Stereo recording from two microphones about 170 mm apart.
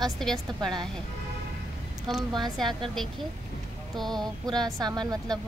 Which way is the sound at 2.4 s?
Centre (ahead or behind).